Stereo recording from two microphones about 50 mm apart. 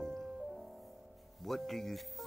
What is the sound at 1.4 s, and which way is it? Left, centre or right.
Speech, centre.